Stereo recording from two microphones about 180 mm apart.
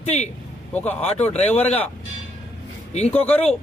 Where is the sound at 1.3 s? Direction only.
35° left (ahead or behind).